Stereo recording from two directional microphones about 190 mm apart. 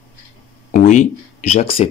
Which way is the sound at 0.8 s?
40° left (ahead or behind).